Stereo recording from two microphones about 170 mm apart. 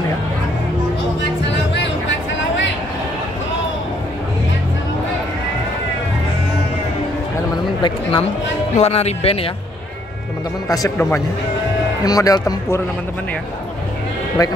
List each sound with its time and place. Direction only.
7.8 s speech: 25° left (ahead or behind)
8.7 s speech: 40° left (ahead or behind)
10.7 s a man's voice: 15° left (ahead or behind)